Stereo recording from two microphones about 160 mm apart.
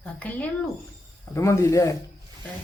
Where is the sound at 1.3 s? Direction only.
15° left (ahead or behind).